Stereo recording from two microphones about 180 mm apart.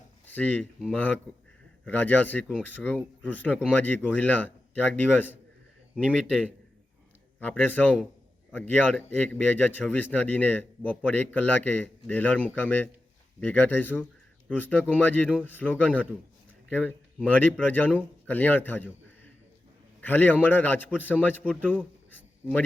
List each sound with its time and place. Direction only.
0.3 s speech: 10° left (ahead or behind)
7.3 s speech: 10° left (ahead or behind)
20.0 s speech: 10° left (ahead or behind)
21.7 s a sound: 10° left (ahead or behind)